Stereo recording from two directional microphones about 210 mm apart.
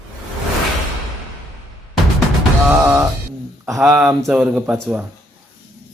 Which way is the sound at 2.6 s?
5° right (ahead or behind).